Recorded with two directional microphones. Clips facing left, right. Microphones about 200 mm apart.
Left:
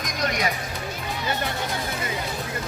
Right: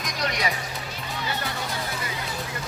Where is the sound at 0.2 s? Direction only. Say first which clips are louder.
Left 2 dB; 50° left (ahead or behind).